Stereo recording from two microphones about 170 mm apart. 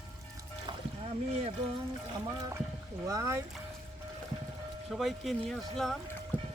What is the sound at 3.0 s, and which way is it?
Speech, 20° right (ahead or behind).